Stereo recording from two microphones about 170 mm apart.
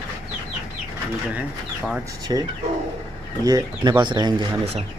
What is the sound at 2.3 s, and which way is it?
Speech, 25° right (ahead or behind).